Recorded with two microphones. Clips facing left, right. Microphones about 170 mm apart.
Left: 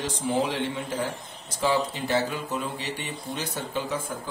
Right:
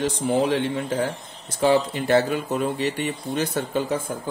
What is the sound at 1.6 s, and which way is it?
Speech, 60° right (ahead or behind).